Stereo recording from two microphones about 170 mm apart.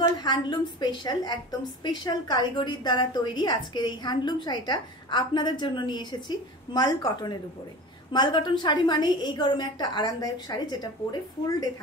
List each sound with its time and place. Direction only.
0.0 s a woman's voice: 25° left (ahead or behind)